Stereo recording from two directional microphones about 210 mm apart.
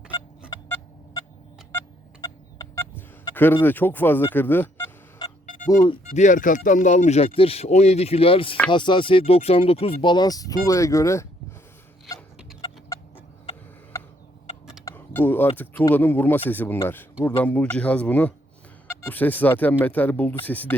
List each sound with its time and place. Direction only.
2.2 s a sound: 15° left (ahead or behind)
5.6 s speech: 20° left (ahead or behind)
6.1 s speech: 35° left (ahead or behind); by 11.3 s 15° left (ahead or behind)
12.6 s chicken: 15° left (ahead or behind)
13.9 s a sound: 15° left (ahead or behind)
15.5 s speech: 10° left (ahead or behind)